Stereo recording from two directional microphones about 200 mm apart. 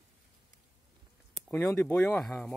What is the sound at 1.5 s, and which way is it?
Speech, 10° left (ahead or behind).